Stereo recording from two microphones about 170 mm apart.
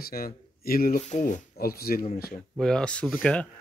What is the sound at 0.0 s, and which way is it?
Speech, 60° left (ahead or behind).